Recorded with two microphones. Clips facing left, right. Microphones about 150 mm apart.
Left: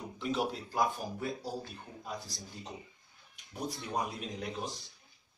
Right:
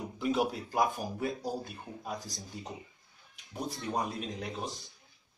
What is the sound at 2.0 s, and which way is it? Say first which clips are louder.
Speech: right 2 dB; 45° right (ahead or behind).